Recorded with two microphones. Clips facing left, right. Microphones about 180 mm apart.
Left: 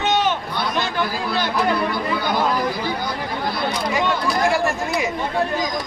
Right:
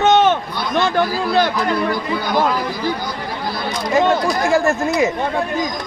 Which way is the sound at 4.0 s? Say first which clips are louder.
Right 6 dB; 45° right (ahead or behind).